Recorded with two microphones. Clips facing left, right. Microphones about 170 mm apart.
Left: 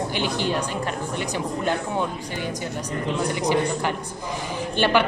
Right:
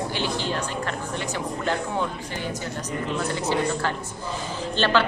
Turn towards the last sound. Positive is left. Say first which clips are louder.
# left 2 dB
turn(degrees=15)  # may be behind; listen again after turning